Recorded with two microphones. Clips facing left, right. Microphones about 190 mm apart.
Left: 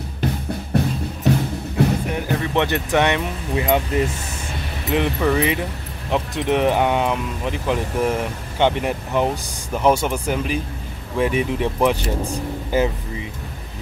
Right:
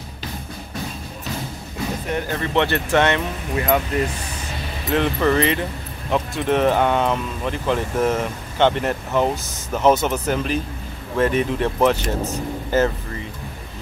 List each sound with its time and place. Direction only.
0.7 s music: 65° left (ahead or behind)
2.0 s speech: 10° left (ahead or behind)
4.9 s speech: 10° left (ahead or behind)